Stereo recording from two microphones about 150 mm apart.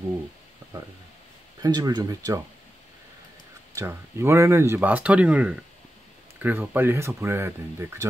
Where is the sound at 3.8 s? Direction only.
15° right (ahead or behind).